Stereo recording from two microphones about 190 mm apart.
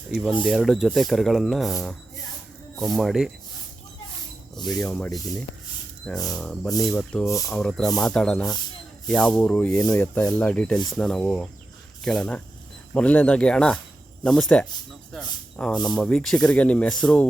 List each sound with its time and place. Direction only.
0.1 s speech: centre (ahead or behind)
4.5 s speech: 5° left (ahead or behind)
7.3 s speech: 15° left (ahead or behind)
7.5 s speech: 5° left (ahead or behind)